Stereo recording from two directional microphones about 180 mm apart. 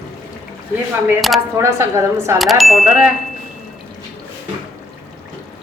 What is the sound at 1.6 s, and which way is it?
Speech, 20° right (ahead or behind).